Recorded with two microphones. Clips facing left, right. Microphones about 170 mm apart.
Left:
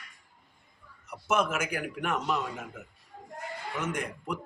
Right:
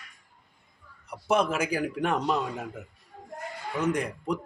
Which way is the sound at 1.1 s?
35° right (ahead or behind).